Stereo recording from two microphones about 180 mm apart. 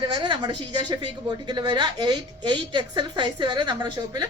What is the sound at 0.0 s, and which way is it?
Speech, 25° right (ahead or behind).